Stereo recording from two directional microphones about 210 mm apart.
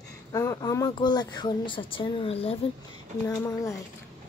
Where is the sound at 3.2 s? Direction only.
15° left (ahead or behind).